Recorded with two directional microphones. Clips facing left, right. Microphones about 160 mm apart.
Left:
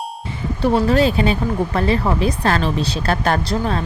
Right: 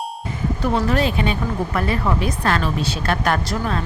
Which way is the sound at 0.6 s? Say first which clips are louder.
Left 5 dB; 30° left (ahead or behind).